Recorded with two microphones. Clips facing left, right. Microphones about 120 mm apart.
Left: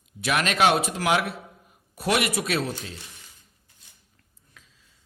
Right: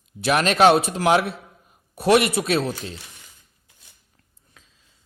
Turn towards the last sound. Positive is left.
turn(degrees=-30)  # may be behind; listen again after turning